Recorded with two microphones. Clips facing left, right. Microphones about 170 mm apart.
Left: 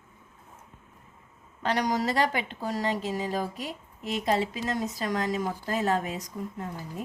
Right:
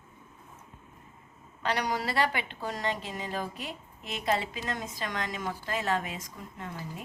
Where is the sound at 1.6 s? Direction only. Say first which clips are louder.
Left 4 dB; 40° left (ahead or behind).